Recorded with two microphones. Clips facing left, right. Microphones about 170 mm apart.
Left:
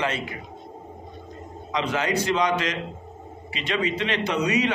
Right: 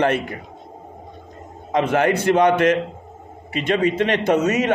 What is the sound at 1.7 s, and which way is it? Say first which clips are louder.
A man's voice: right 8 dB; 55° right (ahead or behind).